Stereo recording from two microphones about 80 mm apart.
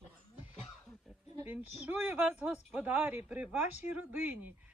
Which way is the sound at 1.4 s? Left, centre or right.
Right.